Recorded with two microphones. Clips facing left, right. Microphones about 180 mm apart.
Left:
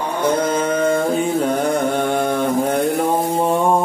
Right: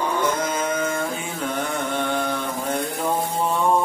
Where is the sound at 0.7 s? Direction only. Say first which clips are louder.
Left 7 dB; 35° left (ahead or behind); by 3.1 s 55° left (ahead or behind).